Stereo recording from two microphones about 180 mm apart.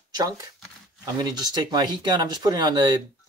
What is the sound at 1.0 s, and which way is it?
Speech, 20° right (ahead or behind).